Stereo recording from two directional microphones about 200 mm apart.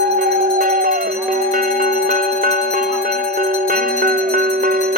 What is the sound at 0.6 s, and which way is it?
Music, 45° right (ahead or behind).